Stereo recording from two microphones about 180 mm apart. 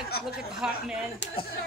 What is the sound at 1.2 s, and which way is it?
Speech, 85° left.